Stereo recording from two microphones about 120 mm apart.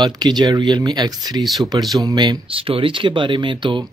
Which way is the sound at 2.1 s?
40° right (ahead or behind).